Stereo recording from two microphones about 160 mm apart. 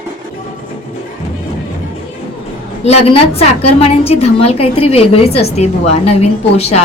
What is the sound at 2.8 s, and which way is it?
A woman's voice, 40° left (ahead or behind).